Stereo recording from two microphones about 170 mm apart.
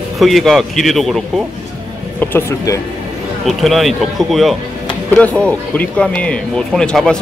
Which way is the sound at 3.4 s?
Centre (ahead or behind).